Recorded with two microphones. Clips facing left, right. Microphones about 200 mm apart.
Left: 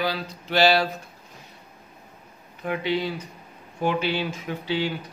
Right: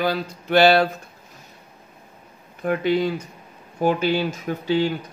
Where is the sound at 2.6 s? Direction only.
50° right (ahead or behind).